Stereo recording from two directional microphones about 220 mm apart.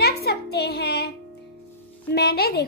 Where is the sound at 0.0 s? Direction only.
45° left (ahead or behind).